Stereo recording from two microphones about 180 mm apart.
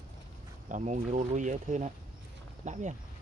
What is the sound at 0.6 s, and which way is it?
Speech, 45° right (ahead or behind).